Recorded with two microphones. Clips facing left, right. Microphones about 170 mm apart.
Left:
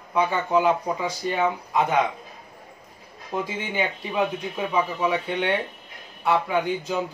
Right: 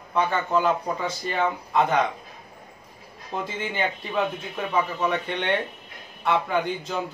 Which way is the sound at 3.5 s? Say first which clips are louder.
Left 1 dB; 10° left (ahead or behind).